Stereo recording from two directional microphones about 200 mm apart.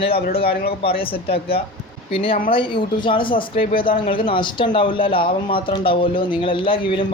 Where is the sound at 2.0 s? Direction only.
25° left (ahead or behind).